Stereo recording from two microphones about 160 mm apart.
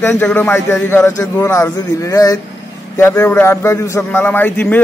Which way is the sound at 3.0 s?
15° left (ahead or behind).